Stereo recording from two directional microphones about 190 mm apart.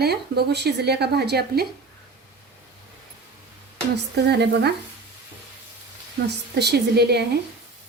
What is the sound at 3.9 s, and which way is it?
Speech, 60° right (ahead or behind).